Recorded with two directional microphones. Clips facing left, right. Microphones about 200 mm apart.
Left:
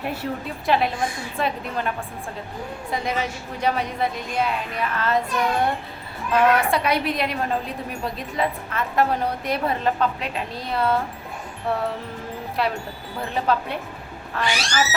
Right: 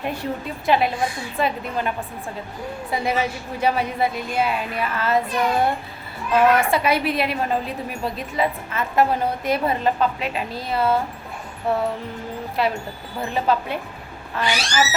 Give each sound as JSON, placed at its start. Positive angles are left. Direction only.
{"t": 0.0, "sound": "a woman's voice", "side_deg": 5}
{"t": 2.9, "sound": "a woman's voice", "side_deg": -5}